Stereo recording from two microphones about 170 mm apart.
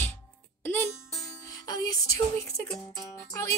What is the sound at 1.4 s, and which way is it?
Music, 20° left (ahead or behind).